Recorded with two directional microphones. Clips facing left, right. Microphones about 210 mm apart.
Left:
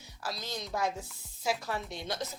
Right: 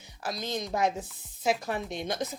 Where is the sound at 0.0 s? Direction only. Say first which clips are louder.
Right 4 dB; 20° right (ahead or behind).